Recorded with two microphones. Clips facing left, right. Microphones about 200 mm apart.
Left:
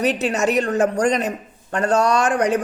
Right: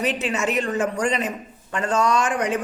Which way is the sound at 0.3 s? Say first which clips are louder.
Left 5 dB; 40° left (ahead or behind).